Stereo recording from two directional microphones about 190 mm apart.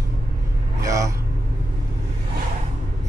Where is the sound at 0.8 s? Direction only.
15° right (ahead or behind).